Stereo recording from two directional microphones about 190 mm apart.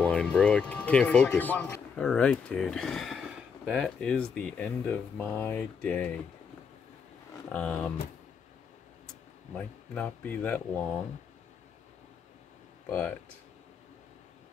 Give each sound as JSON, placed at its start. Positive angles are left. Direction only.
{"t": 0.0, "sound": "speech", "side_deg": 5}
{"t": 7.5, "sound": "speech", "side_deg": 5}
{"t": 9.9, "sound": "speech", "side_deg": 5}